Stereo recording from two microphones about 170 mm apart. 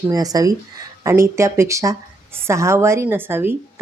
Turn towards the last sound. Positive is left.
turn(degrees=-15)  # may be behind; listen again after turning